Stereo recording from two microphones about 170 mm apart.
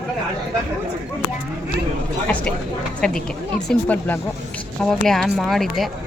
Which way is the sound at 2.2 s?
5° left (ahead or behind).